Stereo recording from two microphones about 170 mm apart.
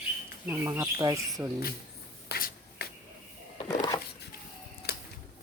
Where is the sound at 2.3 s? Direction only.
65° left (ahead or behind).